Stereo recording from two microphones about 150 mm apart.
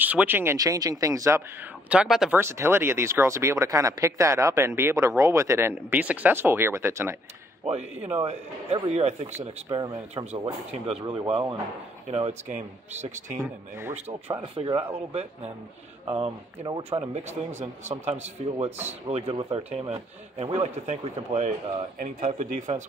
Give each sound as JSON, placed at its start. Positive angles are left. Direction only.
{"t": 0.0, "sound": "speech", "side_deg": -10}
{"t": 1.9, "sound": "speech", "side_deg": -5}
{"t": 2.3, "sound": "speech", "side_deg": -15}
{"t": 7.6, "sound": "speech", "side_deg": -45}
{"t": 12.1, "sound": "speech", "side_deg": -45}
{"t": 13.4, "sound": "speech", "side_deg": -20}
{"t": 13.9, "sound": "speech", "side_deg": -45}
{"t": 16.1, "sound": "speech", "side_deg": -35}
{"t": 17.1, "sound": "speech", "side_deg": -50}